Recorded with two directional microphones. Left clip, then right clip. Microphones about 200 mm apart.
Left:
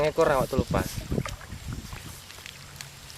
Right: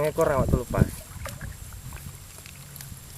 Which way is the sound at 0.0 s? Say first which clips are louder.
Left 1 dB; 15° left (ahead or behind).